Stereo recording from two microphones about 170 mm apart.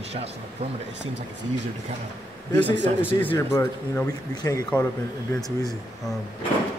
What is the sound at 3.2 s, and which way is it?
Speech, 10° left (ahead or behind).